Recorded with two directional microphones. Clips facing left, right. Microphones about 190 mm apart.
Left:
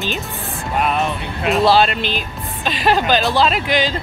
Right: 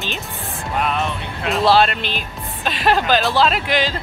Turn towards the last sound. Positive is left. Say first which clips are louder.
# left 2 dB
turn(degrees=0)  # may be behind; listen again after turning